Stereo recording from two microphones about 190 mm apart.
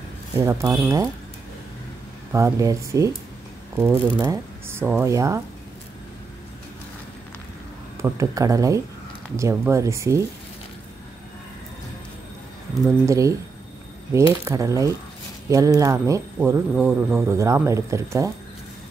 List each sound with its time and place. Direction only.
0.4 s speech: 15° right (ahead or behind)
2.3 s speech: 15° right (ahead or behind)
8.0 s speech: 15° right (ahead or behind)
13.0 s speech: 15° right (ahead or behind)